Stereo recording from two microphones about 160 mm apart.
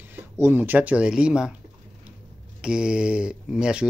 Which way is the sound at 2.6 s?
5° right (ahead or behind).